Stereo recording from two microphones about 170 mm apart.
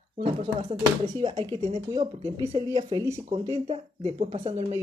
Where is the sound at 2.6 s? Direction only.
25° right (ahead or behind).